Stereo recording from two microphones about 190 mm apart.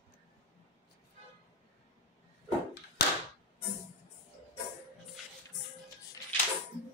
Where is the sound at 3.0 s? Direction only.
60° left (ahead or behind).